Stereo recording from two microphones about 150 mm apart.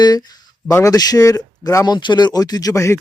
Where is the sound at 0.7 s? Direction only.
20° left (ahead or behind).